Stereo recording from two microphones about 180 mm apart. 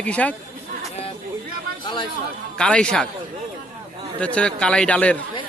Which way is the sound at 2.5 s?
5° left (ahead or behind).